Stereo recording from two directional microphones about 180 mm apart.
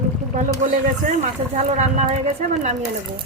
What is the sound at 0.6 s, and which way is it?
Speech, 45° right (ahead or behind).